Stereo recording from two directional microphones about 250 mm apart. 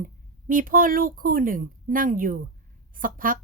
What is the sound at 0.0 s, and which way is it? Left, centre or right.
A woman's voice, right.